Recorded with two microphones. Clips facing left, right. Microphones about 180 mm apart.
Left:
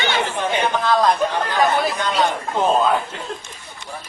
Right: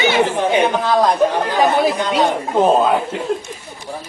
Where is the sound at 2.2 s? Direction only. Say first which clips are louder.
Right 5 dB; 25° right (ahead or behind).